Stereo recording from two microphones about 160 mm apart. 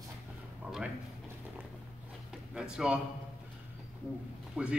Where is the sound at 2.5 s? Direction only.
5° right (ahead or behind).